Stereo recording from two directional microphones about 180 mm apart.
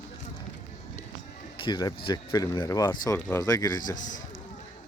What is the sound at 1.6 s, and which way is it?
Speech, 25° left (ahead or behind).